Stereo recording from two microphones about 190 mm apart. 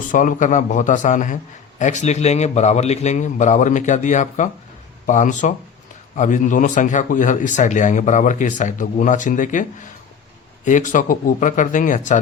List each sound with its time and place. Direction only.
0.1 s speech: 40° left (ahead or behind)
10.7 s speech: 40° left (ahead or behind)